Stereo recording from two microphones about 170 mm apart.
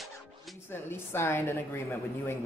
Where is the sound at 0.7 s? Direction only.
15° left (ahead or behind).